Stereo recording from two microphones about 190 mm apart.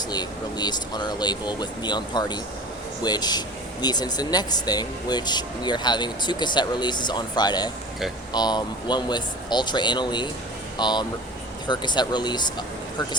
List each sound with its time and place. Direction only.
0.1 s speech: 20° left (ahead or behind)